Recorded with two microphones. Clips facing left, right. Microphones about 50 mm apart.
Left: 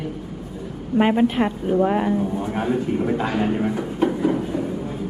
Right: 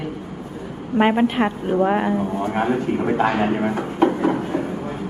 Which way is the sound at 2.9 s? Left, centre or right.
Right.